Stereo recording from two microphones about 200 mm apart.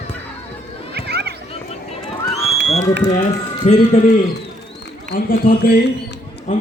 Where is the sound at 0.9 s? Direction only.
55° right (ahead or behind).